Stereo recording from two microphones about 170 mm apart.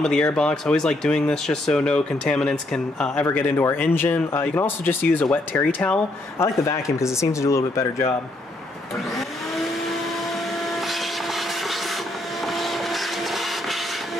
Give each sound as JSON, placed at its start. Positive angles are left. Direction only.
{"t": 0.0, "sound": "speech", "side_deg": 5}
{"t": 10.6, "sound": "vacuum cleaner", "side_deg": 0}
{"t": 12.4, "sound": "a sound", "side_deg": 0}